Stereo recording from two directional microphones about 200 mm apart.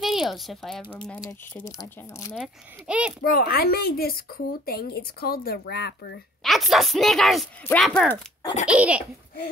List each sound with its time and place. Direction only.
0.0 s speech: centre (ahead or behind)
1.6 s speech: 15° left (ahead or behind)
2.3 s a woman's voice: 5° right (ahead or behind)
3.3 s speech: 50° left (ahead or behind)
6.4 s a woman's voice: centre (ahead or behind)